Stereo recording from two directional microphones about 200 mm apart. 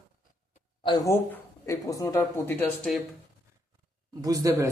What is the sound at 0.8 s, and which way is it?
A man's voice, 20° left (ahead or behind).